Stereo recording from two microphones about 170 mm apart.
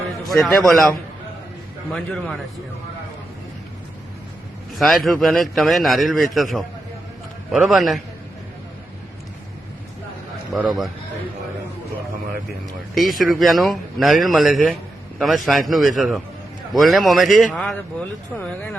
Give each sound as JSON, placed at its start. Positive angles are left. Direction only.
{"t": 0.3, "sound": "speech", "side_deg": 0}
{"t": 1.9, "sound": "speech", "side_deg": 5}
{"t": 4.8, "sound": "speech", "side_deg": 0}
{"t": 10.5, "sound": "speech", "side_deg": 0}
{"t": 12.9, "sound": "speech", "side_deg": 0}